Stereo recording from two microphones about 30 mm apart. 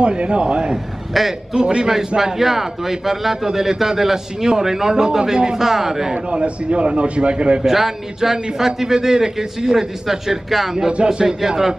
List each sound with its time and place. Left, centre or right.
0.0 s a man's voice: right
1.1 s a man's voice: centre
1.5 s a man's voice: right
2.1 s a man's voice: centre
6.1 s a man's voice: right
7.6 s a man's voice: centre